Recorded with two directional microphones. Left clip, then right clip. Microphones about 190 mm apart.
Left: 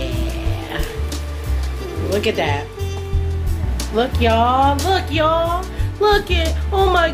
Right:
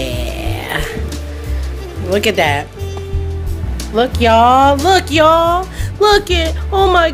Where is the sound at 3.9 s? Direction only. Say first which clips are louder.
Right 6 dB; 55° right (ahead or behind).